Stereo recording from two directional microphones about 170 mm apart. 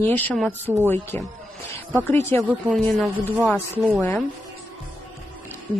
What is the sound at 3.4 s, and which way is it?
Speech, 10° left (ahead or behind).